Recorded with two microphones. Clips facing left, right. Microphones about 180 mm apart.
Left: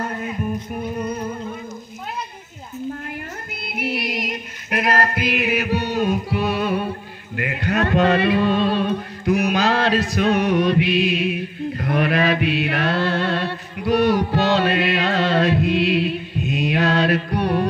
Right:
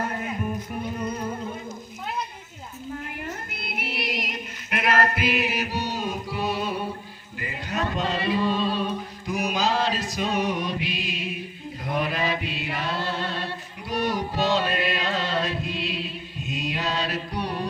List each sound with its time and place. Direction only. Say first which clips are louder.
3.9 s chant: left 2 dB; 40° left (ahead or behind)
5.3 s music: left 5 dB; 60° left (ahead or behind)